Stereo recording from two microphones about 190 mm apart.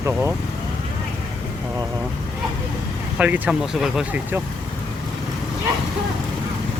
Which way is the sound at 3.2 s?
5° right (ahead or behind).